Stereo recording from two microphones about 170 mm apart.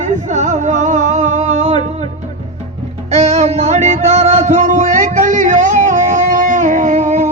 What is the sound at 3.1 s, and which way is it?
Music, 40° right (ahead or behind).